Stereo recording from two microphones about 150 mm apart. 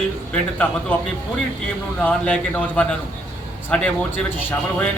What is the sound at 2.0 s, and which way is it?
A man's voice, 10° left (ahead or behind).